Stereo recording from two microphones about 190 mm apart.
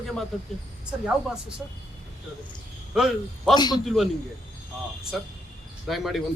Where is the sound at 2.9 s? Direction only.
Centre (ahead or behind).